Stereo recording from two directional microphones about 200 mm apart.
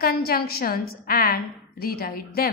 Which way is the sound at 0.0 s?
50° left (ahead or behind).